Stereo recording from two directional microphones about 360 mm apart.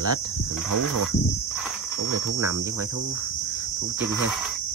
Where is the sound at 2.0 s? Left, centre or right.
Right.